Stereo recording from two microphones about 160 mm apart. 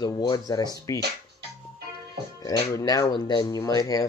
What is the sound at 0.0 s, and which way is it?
Speech, 25° left (ahead or behind).